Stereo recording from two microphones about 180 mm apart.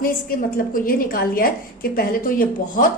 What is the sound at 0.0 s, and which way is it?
A woman's voice, 55° left (ahead or behind).